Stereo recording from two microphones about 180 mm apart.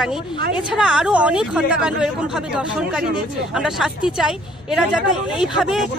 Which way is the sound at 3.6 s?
5° right (ahead or behind).